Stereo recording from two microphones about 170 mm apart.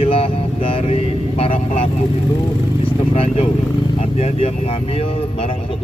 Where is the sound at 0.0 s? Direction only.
35° left (ahead or behind).